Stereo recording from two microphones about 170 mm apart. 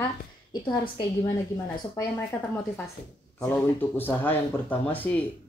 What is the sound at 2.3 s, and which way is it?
A woman's voice, 10° left (ahead or behind).